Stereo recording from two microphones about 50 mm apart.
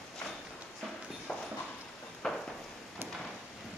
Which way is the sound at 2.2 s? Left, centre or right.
Centre.